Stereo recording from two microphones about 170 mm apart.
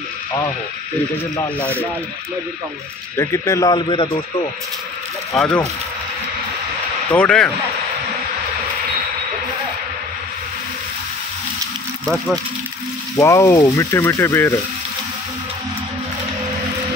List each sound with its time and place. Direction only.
3.2 s speech: 15° left (ahead or behind)
5.3 s speech: centre (ahead or behind)
7.1 s speech: 5° left (ahead or behind)
13.1 s speech: 20° left (ahead or behind)